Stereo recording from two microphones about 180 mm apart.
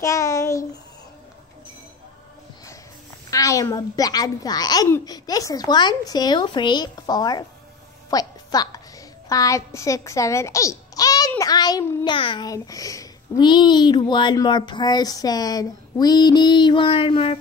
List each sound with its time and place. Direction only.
0.0 s a sound: 20° left (ahead or behind)
3.3 s a child's voice: 20° left (ahead or behind)
8.1 s music: 20° left (ahead or behind)
9.3 s a child's voice: 20° left (ahead or behind)